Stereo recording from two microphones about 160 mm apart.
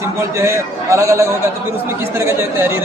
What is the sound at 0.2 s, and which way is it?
A man's voice, 20° right (ahead or behind).